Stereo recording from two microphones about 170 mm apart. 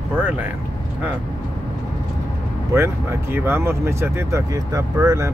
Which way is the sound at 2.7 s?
15° right (ahead or behind).